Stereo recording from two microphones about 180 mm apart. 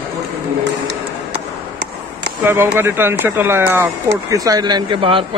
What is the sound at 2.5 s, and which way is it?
A man's voice, 15° right (ahead or behind).